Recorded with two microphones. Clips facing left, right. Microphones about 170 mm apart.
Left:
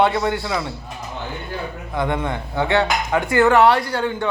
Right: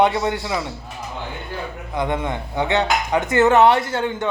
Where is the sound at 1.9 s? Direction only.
20° right (ahead or behind).